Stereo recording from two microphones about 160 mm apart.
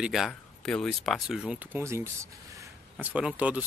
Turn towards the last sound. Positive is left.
turn(degrees=-10)  # may be behind; listen again after turning